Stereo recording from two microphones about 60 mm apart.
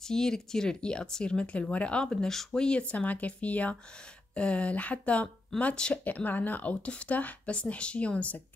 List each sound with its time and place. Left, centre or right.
0.1 s speech: centre